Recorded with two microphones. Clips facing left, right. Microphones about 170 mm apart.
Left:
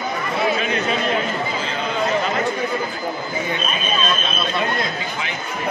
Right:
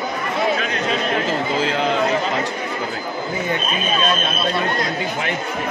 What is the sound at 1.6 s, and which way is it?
Chatter, 85° right.